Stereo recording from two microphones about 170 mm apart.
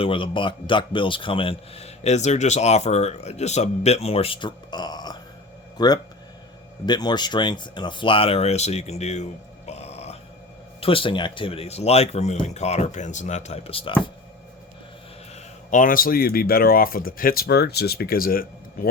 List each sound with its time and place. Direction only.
0.0 s a man's voice: 30° left (ahead or behind)
9.6 s grunt: 40° left (ahead or behind)
10.8 s a man's voice: 30° left (ahead or behind)
15.7 s speech: 55° left (ahead or behind)